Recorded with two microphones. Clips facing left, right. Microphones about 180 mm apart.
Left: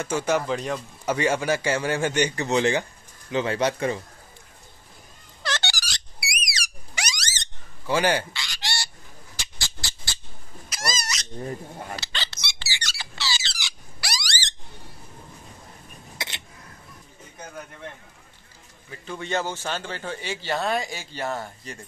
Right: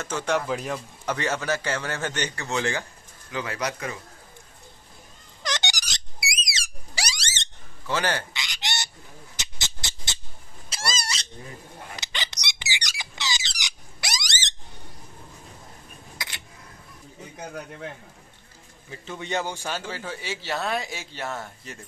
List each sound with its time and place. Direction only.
0.0 s a man's voice: 10° left (ahead or behind)
0.5 s a man's voice: 5° right (ahead or behind)
1.0 s a man's voice: 10° left (ahead or behind); by 4.0 s 30° left (ahead or behind)
5.4 s a sound: 15° right (ahead or behind)
7.8 s speech: 10° left (ahead or behind)
8.3 s goose: 20° right (ahead or behind)
9.4 s squawk: 20° right (ahead or behind)
10.7 s cat: 30° right (ahead or behind)
11.9 s squeak: 20° right (ahead or behind)
16.2 s a sound: 25° left (ahead or behind)
18.9 s a man's voice: 20° right (ahead or behind); by 21.7 s centre (ahead or behind)